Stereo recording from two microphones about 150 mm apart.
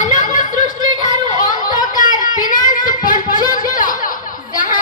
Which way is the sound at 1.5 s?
60° left (ahead or behind).